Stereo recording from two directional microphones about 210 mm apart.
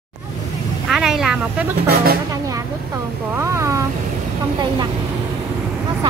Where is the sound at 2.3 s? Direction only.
15° right (ahead or behind).